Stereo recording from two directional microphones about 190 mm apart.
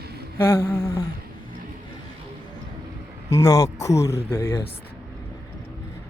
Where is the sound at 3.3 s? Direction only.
20° left (ahead or behind).